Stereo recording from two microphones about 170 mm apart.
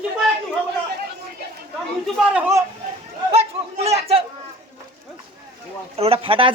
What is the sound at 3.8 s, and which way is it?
Speech, 35° right (ahead or behind).